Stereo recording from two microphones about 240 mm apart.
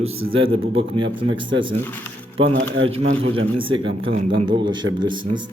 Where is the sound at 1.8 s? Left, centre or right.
Centre.